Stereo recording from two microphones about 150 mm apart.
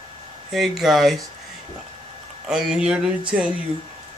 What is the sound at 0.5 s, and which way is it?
Speech, centre (ahead or behind).